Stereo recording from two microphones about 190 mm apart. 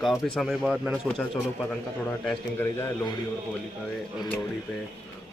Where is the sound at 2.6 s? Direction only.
10° left (ahead or behind).